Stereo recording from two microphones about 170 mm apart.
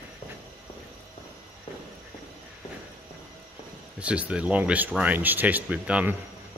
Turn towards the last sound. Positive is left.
turn(degrees=-5)  # may be behind; listen again after turning